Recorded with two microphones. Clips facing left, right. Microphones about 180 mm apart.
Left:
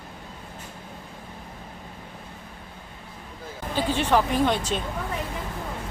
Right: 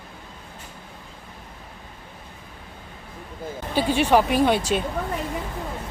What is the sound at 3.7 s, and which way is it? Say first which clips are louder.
Speech: right 4 dB; 10° right (ahead or behind).